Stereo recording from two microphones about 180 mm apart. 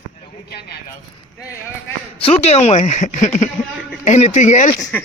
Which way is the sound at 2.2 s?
35° left (ahead or behind).